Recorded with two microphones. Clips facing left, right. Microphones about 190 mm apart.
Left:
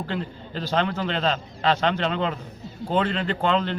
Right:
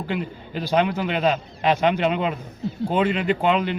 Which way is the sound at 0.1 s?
15° right (ahead or behind).